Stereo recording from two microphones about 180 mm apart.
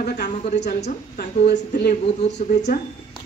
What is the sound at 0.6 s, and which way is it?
Speech, 65° left (ahead or behind).